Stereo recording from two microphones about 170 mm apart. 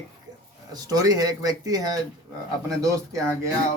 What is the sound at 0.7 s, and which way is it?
Speech, 20° right (ahead or behind).